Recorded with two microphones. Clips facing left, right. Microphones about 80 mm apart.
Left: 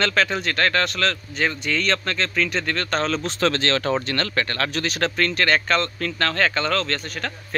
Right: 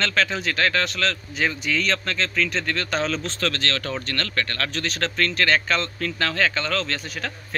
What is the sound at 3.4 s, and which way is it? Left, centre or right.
Speech, left.